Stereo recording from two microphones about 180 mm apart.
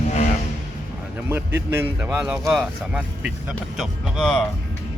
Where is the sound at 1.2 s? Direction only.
15° right (ahead or behind).